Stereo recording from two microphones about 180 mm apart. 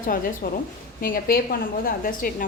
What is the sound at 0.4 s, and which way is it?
A woman's voice, 55° left (ahead or behind).